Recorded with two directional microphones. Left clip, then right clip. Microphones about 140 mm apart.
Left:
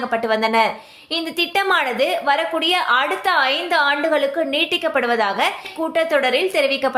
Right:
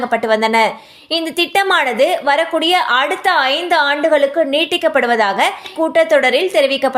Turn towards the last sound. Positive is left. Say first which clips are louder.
# right 4 dB
turn(degrees=-30)  # may be behind; listen again after turning